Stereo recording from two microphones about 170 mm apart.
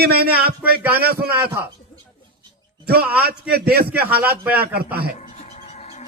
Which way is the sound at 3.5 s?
65° right (ahead or behind).